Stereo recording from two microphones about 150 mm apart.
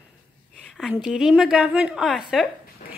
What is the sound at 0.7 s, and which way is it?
A woman's voice, centre (ahead or behind).